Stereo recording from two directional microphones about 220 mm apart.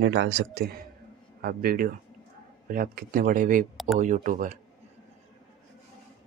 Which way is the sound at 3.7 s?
Centre (ahead or behind).